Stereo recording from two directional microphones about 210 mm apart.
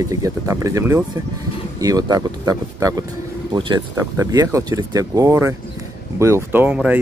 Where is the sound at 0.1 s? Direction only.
15° right (ahead or behind).